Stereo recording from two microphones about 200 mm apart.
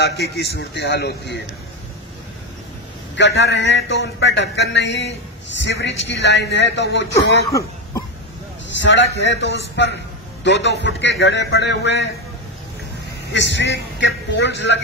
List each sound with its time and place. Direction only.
0.0 s speech: 55° left (ahead or behind)
3.2 s speech: 60° left (ahead or behind)
8.6 s speech: 65° left (ahead or behind)
13.3 s speech: 65° left (ahead or behind)